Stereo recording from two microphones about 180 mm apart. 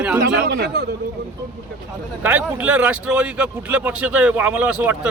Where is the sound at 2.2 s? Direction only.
10° right (ahead or behind).